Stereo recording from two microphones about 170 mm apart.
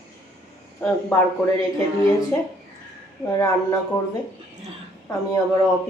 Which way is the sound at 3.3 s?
20° left (ahead or behind).